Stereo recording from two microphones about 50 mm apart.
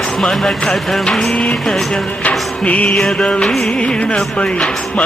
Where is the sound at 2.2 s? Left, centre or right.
Left.